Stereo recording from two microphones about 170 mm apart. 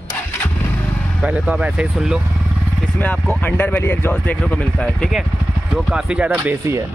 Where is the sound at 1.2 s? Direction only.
5° right (ahead or behind).